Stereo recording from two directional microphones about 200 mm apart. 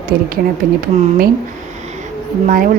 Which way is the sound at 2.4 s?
45° right (ahead or behind).